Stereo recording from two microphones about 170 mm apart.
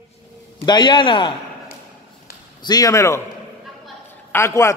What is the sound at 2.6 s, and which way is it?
Speech, 20° left (ahead or behind).